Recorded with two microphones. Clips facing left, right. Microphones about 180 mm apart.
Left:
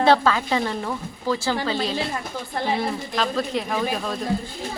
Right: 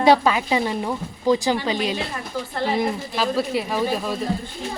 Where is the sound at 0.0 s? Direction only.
15° right (ahead or behind).